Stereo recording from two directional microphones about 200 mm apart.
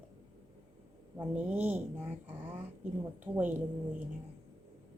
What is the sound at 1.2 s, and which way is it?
A woman's voice, 10° right (ahead or behind).